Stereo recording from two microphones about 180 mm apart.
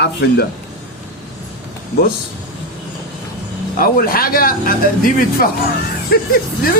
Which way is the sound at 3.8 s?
55° left (ahead or behind).